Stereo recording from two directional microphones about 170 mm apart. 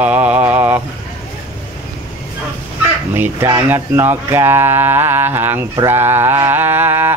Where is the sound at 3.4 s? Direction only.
15° right (ahead or behind).